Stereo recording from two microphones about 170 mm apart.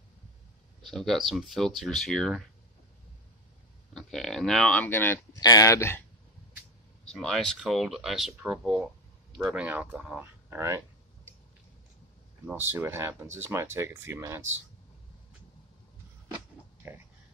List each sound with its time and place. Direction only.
0.8 s speech: centre (ahead or behind)
3.9 s speech: centre (ahead or behind)
7.1 s speech: centre (ahead or behind)
12.4 s speech: 10° right (ahead or behind)